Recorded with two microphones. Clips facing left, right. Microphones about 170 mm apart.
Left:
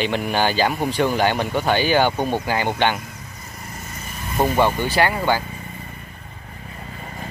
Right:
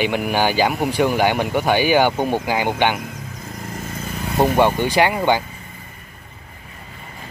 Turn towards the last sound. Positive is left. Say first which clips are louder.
# right 2 dB
turn(degrees=-20)  # may be behind; listen again after turning